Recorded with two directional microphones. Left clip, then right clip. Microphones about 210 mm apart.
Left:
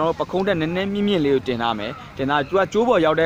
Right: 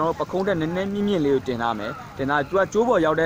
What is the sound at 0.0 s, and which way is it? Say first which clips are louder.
Speech: left 2 dB; 25° left (ahead or behind).